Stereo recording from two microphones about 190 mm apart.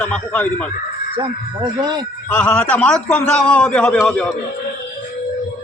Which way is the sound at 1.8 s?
20° right (ahead or behind).